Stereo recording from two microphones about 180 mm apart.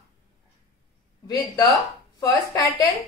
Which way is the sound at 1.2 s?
20° left (ahead or behind).